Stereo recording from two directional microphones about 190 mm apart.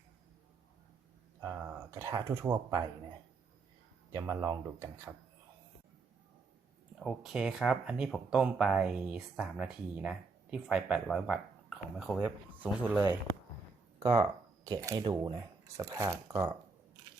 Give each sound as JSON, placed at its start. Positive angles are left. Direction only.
{"t": 1.4, "sound": "speech", "side_deg": -15}
{"t": 4.1, "sound": "speech", "side_deg": -15}
{"t": 7.0, "sound": "speech", "side_deg": 0}